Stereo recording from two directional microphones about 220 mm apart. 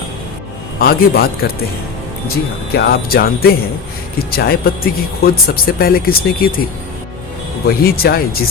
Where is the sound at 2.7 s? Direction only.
45° left (ahead or behind).